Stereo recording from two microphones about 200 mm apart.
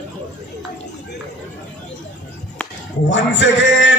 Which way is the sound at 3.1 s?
65° left (ahead or behind).